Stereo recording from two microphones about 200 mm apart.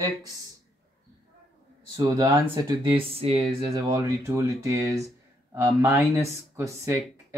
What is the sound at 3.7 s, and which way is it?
Speech, 20° right (ahead or behind).